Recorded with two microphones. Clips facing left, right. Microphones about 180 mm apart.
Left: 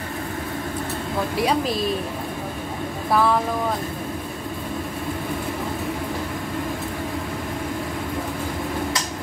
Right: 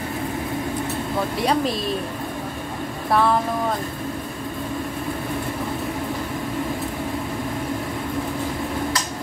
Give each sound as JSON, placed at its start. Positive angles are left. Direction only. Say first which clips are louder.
{"t": 1.4, "sound": "a woman's voice", "louder": "even", "side_deg": 0}
{"t": 3.1, "sound": "speech", "louder": "even", "side_deg": 0}